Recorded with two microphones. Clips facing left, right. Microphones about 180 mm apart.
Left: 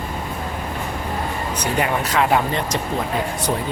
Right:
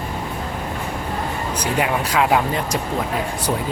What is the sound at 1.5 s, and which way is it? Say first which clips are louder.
Speech: even; 10° right (ahead or behind).